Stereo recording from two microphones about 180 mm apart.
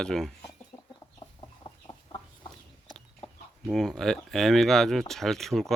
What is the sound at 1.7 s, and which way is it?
Chicken, 25° left (ahead or behind).